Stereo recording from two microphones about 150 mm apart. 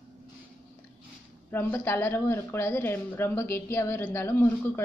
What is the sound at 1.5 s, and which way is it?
A woman's voice, 15° left (ahead or behind).